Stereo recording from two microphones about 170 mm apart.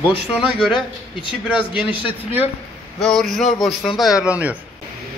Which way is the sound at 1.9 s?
30° left (ahead or behind).